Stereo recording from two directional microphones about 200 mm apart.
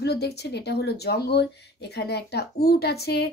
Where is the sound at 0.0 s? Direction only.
55° left (ahead or behind).